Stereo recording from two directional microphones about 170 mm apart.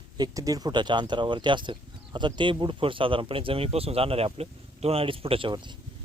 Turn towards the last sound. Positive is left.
turn(degrees=-25)  # may be behind; listen again after turning